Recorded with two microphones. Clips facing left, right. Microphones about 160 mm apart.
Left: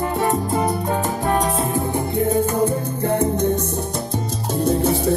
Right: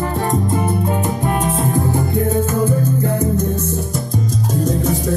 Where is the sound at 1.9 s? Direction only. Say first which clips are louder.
Right 1 dB; 25° left (ahead or behind).